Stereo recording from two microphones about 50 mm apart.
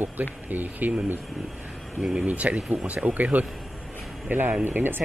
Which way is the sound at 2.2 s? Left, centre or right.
Right.